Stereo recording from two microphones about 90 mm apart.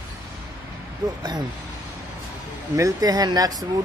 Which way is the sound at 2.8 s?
45° right (ahead or behind).